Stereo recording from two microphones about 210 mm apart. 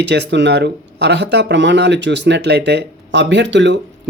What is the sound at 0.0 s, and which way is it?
Speech, 55° right (ahead or behind).